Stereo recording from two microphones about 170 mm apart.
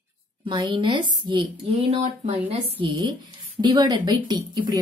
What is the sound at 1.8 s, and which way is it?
A woman's voice, 40° right (ahead or behind).